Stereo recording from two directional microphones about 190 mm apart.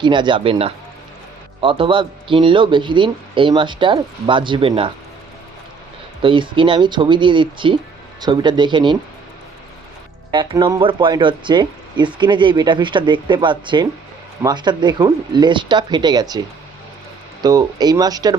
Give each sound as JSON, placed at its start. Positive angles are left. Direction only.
{"t": 0.0, "sound": "speech", "side_deg": -25}
{"t": 6.2, "sound": "speech", "side_deg": -25}
{"t": 10.3, "sound": "speech", "side_deg": -25}
{"t": 17.4, "sound": "speech", "side_deg": -20}